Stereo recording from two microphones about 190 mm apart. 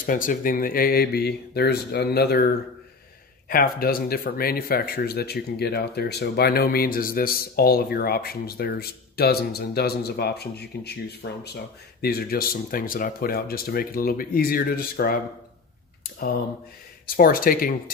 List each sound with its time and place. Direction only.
0.0 s speech: 45° left (ahead or behind)
3.4 s speech: 50° left (ahead or behind)
17.0 s speech: 50° left (ahead or behind)